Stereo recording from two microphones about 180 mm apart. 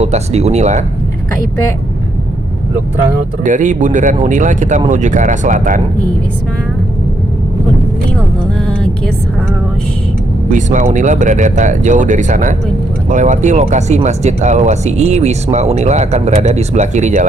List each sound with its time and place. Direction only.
0.0 s speech: 35° right (ahead or behind)
3.4 s speech: 45° right (ahead or behind)
8.6 s music: 5° left (ahead or behind)
10.5 s speech: 45° right (ahead or behind)